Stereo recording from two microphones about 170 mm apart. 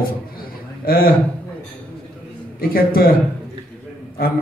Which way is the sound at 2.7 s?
60° left (ahead or behind).